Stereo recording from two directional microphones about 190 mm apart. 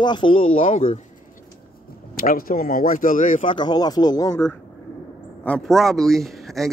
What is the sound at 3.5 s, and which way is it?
Speech, 20° left (ahead or behind).